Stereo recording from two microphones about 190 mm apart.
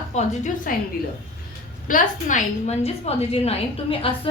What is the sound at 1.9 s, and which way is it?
A woman's voice, 45° left (ahead or behind).